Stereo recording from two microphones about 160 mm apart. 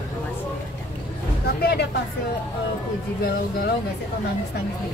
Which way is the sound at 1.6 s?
80° left.